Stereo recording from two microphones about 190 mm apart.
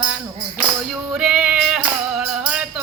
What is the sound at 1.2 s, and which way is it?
Music, 5° right (ahead or behind).